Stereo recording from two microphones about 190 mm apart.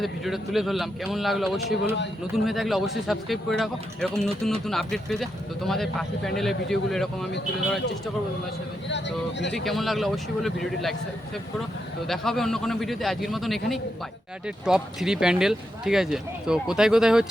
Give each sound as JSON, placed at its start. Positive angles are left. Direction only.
{"t": 0.0, "sound": "speech", "side_deg": 0}
{"t": 8.9, "sound": "speech", "side_deg": 65}
{"t": 9.6, "sound": "speech", "side_deg": 0}
{"t": 12.0, "sound": "speech", "side_deg": 0}